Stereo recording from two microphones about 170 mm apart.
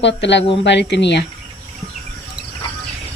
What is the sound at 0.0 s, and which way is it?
A woman's voice, 90° left.